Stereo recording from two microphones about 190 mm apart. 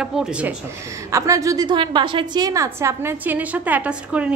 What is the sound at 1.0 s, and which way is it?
A woman's voice, 15° right (ahead or behind).